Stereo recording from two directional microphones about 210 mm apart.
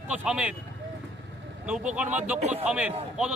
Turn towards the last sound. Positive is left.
turn(degrees=-5)  # may be behind; listen again after turning